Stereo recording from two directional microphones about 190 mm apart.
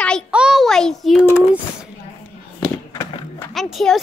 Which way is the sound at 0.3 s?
5° right (ahead or behind).